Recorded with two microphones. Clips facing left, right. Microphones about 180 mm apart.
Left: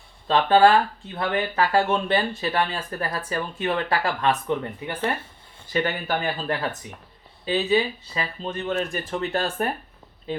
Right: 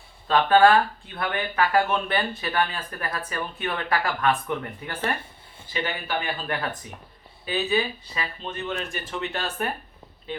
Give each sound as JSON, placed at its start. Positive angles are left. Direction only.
{"t": 0.3, "sound": "speech", "side_deg": 25}
{"t": 4.4, "sound": "speech", "side_deg": 15}
{"t": 5.7, "sound": "speech", "side_deg": 45}
{"t": 7.4, "sound": "speech", "side_deg": 30}